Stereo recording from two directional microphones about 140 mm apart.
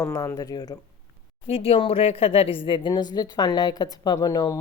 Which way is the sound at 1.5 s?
45° left (ahead or behind).